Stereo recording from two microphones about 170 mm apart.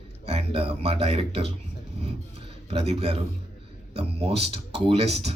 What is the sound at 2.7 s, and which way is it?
Speech, 35° right (ahead or behind).